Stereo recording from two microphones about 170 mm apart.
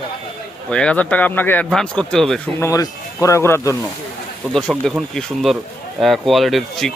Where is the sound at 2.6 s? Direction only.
20° left (ahead or behind).